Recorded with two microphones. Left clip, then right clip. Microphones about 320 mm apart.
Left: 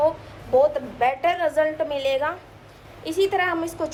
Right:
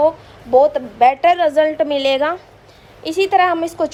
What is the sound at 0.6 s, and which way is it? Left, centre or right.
A woman's voice, right.